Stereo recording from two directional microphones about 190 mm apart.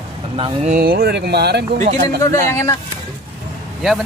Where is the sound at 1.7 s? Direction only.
40° right (ahead or behind).